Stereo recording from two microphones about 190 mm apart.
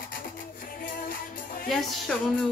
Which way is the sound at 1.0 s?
50° left (ahead or behind).